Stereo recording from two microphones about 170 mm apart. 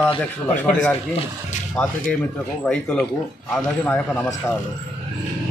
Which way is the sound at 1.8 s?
5° left (ahead or behind).